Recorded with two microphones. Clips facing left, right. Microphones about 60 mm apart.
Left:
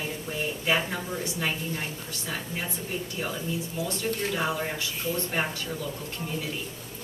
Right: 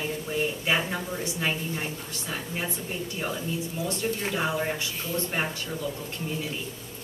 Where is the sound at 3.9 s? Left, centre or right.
Right.